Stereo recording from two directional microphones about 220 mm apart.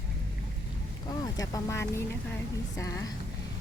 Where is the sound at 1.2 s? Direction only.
15° left (ahead or behind).